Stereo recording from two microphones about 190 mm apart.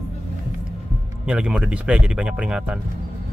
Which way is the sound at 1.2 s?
5° right (ahead or behind).